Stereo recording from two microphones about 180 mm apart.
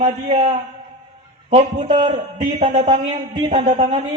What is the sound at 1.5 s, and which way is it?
A man's voice, 25° right (ahead or behind).